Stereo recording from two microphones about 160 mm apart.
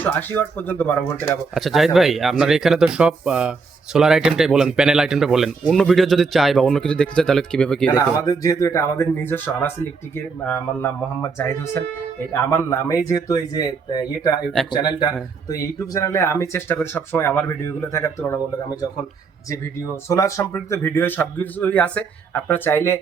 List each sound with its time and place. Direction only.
0.0 s speech: 10° left (ahead or behind)
1.5 s speech: centre (ahead or behind)
7.9 s speech: 20° left (ahead or behind)
19.5 s speech: 20° left (ahead or behind)